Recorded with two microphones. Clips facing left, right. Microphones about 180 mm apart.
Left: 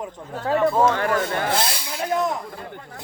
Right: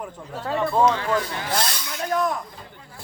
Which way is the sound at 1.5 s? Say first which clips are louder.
Left 2 dB; 25° left (ahead or behind).